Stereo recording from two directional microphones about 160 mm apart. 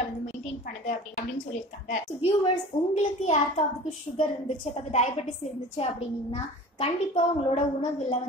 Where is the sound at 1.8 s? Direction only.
45° left (ahead or behind).